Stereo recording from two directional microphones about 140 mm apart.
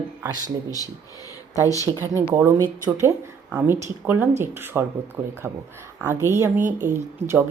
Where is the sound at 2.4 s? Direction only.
20° right (ahead or behind).